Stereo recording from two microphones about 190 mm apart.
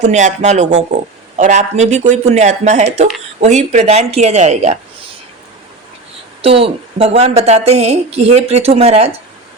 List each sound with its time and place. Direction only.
0.0 s a woman's voice: 40° right (ahead or behind)
6.4 s a woman's voice: 30° right (ahead or behind)